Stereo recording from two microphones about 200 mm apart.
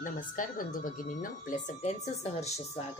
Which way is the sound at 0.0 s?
40° left (ahead or behind).